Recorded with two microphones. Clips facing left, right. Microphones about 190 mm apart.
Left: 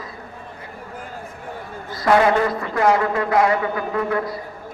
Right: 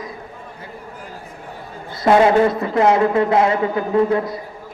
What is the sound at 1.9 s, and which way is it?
A man's voice, 25° right (ahead or behind).